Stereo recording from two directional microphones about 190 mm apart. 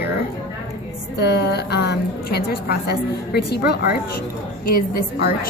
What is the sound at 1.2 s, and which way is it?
A woman's voice, 60° left (ahead or behind).